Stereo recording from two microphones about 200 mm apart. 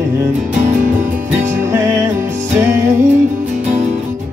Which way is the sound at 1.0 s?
10° right (ahead or behind).